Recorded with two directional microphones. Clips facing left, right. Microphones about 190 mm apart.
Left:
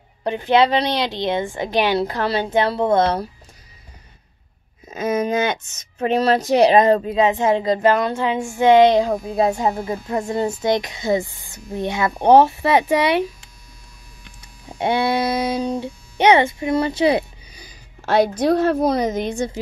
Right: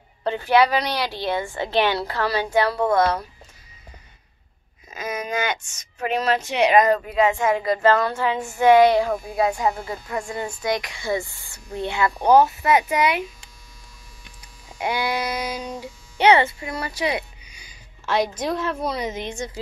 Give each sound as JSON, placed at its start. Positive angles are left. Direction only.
{"t": 0.2, "sound": "speech", "side_deg": 15}
{"t": 4.8, "sound": "speech", "side_deg": 25}
{"t": 14.7, "sound": "speech", "side_deg": 30}
{"t": 16.2, "sound": "speech", "side_deg": 20}
{"t": 18.0, "sound": "a woman's voice", "side_deg": 60}
{"t": 18.7, "sound": "a woman's voice", "side_deg": 40}